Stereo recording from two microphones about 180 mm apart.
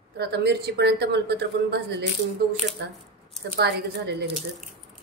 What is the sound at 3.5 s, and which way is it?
Speech, 65° right (ahead or behind).